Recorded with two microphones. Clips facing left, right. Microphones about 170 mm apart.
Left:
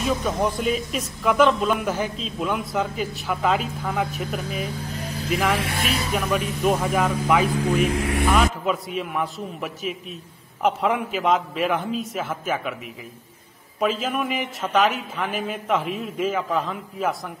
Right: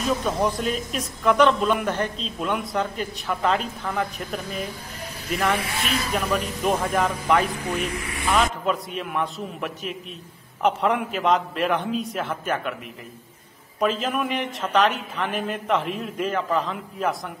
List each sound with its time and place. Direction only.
0.0 s speech: centre (ahead or behind)
6.1 s speech: centre (ahead or behind)
7.9 s speech: 75° left (ahead or behind)
8.3 s speech: 5° left (ahead or behind)
13.7 s speech: centre (ahead or behind)